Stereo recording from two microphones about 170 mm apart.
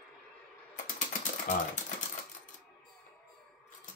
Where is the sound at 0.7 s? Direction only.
50° left (ahead or behind).